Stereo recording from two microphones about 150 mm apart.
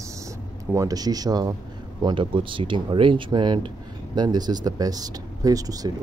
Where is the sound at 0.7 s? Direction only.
25° right (ahead or behind).